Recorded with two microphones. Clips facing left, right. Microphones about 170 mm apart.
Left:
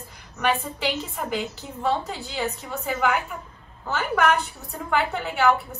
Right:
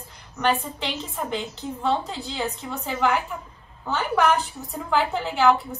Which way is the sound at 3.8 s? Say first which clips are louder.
Right 1 dB; centre (ahead or behind).